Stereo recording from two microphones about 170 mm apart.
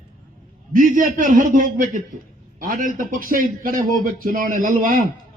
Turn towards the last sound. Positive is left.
turn(degrees=-50)  # may be behind; listen again after turning